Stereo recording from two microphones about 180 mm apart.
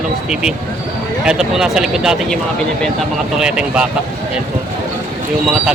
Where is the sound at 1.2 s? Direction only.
5° right (ahead or behind).